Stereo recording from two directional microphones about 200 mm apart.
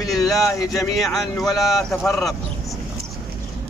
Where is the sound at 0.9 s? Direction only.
Centre (ahead or behind).